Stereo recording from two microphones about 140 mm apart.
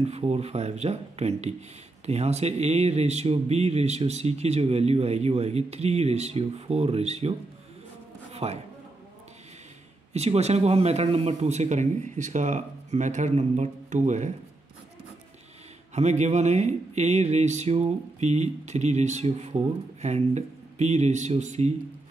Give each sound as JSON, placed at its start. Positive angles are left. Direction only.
{"t": 0.0, "sound": "speech", "side_deg": -50}
{"t": 8.3, "sound": "a sound", "side_deg": -50}
{"t": 10.1, "sound": "speech", "side_deg": -50}
{"t": 15.9, "sound": "speech", "side_deg": -55}